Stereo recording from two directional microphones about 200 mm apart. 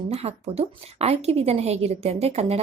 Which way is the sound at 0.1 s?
30° right (ahead or behind).